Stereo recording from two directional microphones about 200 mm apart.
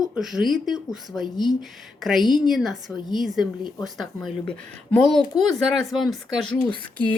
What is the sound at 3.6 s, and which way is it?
Speech, 20° left (ahead or behind).